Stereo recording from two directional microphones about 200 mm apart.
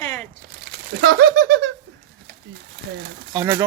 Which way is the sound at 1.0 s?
70° right (ahead or behind).